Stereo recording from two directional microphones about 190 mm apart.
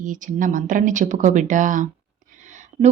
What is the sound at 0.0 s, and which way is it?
Speech, 45° right (ahead or behind).